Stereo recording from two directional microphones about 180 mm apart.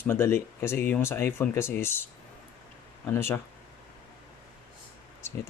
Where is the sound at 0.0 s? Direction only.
10° left (ahead or behind).